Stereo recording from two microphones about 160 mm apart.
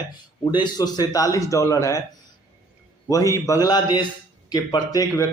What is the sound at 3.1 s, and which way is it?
Speech, 20° left (ahead or behind).